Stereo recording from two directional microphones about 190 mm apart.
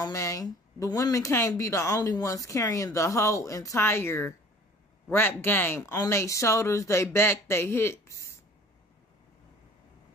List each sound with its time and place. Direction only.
0.0 s speech: 15° left (ahead or behind)